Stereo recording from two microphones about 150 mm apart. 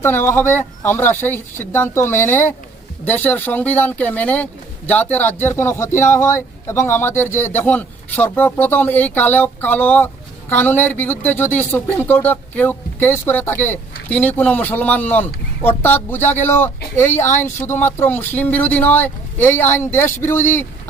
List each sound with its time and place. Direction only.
0.0 s speech: 15° left (ahead or behind)